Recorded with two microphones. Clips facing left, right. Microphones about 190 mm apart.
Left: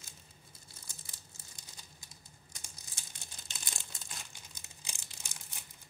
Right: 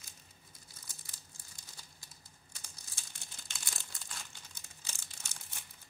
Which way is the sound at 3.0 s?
20° left (ahead or behind).